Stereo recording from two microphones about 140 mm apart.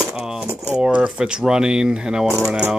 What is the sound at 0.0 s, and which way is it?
Speech, 5° right (ahead or behind).